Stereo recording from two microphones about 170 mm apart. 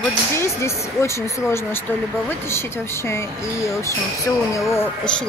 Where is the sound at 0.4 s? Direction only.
15° left (ahead or behind).